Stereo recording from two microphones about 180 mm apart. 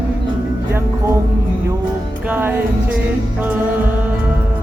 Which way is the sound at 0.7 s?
15° right (ahead or behind).